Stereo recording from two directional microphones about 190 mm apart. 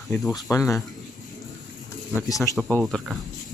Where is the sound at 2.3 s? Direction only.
15° left (ahead or behind).